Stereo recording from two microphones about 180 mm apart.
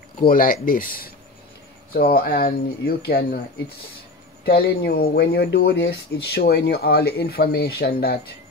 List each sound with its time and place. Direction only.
0.2 s speech: 50° left (ahead or behind)